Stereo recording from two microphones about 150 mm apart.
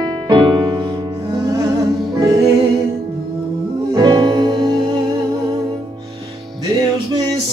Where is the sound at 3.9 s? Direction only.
30° right (ahead or behind).